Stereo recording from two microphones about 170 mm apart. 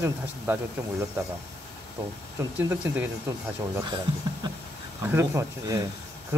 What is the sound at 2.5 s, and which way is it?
Speech, 10° right (ahead or behind).